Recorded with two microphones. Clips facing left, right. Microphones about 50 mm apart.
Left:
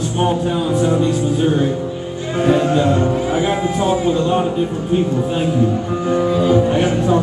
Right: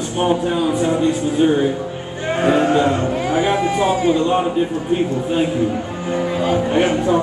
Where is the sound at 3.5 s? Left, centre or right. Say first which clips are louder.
Right 1 dB; right.